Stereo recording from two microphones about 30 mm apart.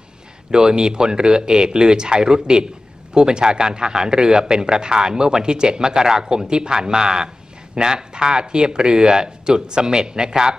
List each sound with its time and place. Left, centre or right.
0.5 s speech: right